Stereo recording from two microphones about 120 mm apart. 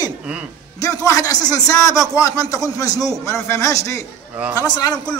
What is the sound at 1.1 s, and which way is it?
Speech, 30° left (ahead or behind).